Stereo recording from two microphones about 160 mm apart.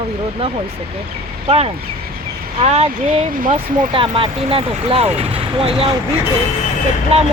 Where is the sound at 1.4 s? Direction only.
40° right (ahead or behind).